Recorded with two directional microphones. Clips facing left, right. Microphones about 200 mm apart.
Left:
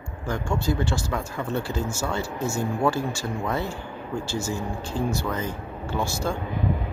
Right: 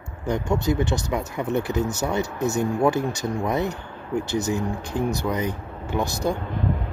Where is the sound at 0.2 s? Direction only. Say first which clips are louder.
Right 4 dB; 20° right (ahead or behind).